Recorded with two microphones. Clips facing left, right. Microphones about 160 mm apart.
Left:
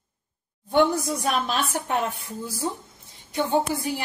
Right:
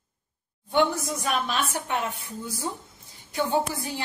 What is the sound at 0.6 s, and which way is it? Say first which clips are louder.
A woman's voice: left 3 dB; 40° left (ahead or behind).